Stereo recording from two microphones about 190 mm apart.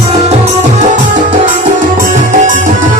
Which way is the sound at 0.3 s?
35° right (ahead or behind).